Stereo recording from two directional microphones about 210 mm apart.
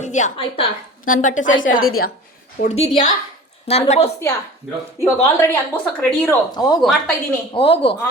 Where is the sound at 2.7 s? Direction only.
30° left (ahead or behind).